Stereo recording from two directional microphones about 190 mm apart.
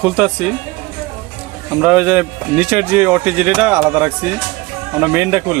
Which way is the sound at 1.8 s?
5° right (ahead or behind).